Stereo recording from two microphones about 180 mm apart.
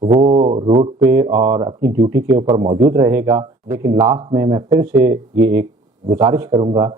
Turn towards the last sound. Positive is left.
turn(degrees=-25)  # may be behind; listen again after turning